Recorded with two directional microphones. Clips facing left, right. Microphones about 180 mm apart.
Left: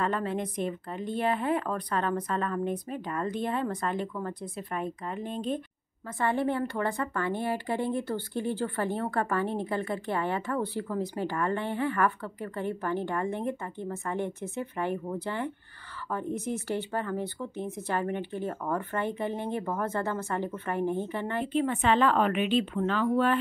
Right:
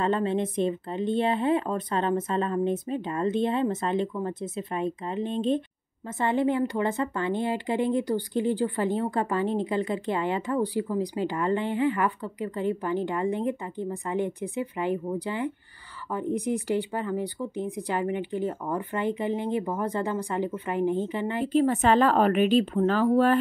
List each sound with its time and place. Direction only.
0.0 s a woman's voice: 25° right (ahead or behind)
21.5 s speech: 40° right (ahead or behind)